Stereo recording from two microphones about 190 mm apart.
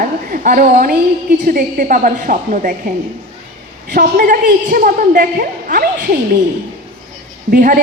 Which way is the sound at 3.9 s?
55° right (ahead or behind).